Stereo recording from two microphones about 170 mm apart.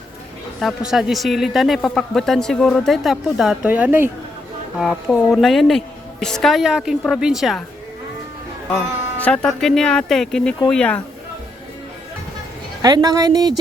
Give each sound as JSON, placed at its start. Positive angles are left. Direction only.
{"t": 0.6, "sound": "speech", "side_deg": 0}
{"t": 9.2, "sound": "speech", "side_deg": 5}
{"t": 12.8, "sound": "a woman's voice", "side_deg": -25}